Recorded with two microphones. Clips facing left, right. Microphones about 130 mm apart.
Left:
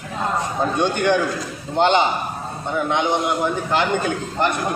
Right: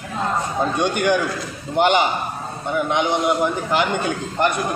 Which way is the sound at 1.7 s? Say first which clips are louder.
Even; 15° right (ahead or behind).